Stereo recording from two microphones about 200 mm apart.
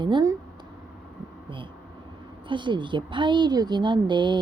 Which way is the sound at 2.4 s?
25° right (ahead or behind).